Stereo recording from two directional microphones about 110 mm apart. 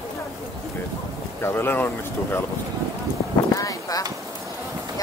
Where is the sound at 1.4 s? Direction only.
20° left (ahead or behind).